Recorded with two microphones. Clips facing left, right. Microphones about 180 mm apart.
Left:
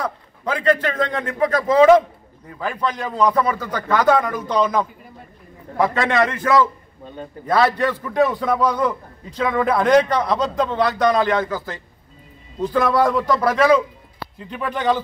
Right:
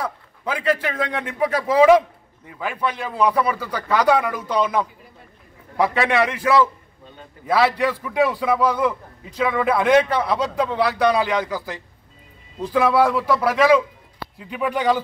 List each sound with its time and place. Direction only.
0.0 s a man's voice: 10° right (ahead or behind)